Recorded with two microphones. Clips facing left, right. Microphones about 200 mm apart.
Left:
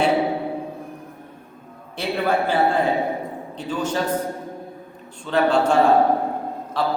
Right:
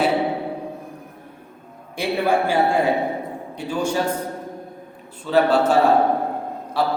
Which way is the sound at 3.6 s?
10° right (ahead or behind).